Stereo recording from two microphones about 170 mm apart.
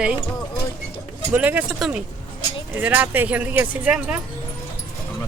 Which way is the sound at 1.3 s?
10° right (ahead or behind).